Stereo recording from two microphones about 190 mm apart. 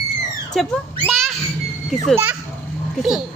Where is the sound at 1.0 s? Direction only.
Centre (ahead or behind).